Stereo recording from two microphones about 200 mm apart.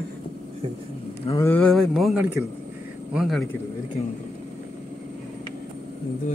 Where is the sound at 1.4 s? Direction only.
5° left (ahead or behind).